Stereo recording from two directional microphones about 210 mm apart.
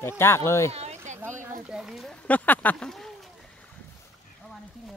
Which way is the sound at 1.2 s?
10° right (ahead or behind).